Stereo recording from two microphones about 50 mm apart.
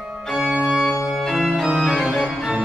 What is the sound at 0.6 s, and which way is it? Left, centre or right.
Organ, centre.